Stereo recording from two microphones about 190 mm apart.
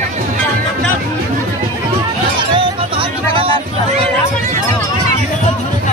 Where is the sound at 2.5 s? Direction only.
25° right (ahead or behind).